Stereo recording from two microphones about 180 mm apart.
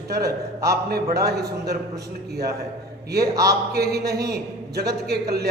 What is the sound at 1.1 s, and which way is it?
Speech, 60° right (ahead or behind).